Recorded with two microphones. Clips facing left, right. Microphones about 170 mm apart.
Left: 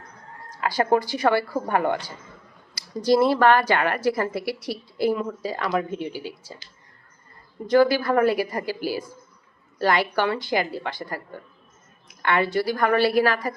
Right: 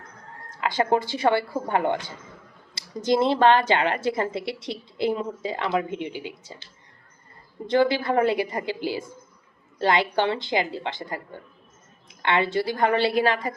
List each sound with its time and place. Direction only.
0.6 s a woman's voice: 20° right (ahead or behind)
7.7 s a woman's voice: 25° right (ahead or behind)